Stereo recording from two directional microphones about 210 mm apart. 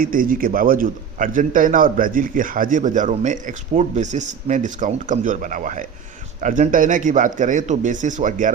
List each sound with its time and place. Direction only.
0.0 s a man's voice: 40° right (ahead or behind)